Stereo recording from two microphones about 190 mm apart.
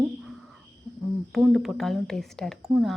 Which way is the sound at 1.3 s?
Centre (ahead or behind).